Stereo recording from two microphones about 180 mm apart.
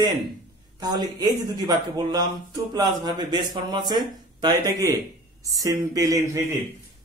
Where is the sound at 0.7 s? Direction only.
20° right (ahead or behind).